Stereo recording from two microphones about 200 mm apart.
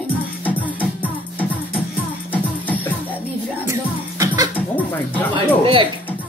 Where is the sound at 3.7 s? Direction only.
15° right (ahead or behind).